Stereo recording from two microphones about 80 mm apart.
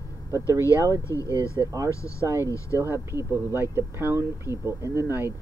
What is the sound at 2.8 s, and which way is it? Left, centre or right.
Speech, right.